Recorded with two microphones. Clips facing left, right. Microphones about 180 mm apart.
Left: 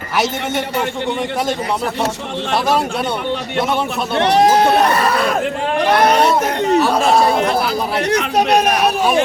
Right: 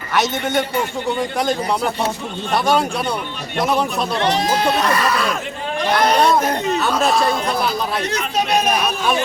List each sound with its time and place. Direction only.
4.2 s speech: 65° left (ahead or behind)
4.9 s speech: 55° left (ahead or behind)
8.1 s speech: 70° left (ahead or behind)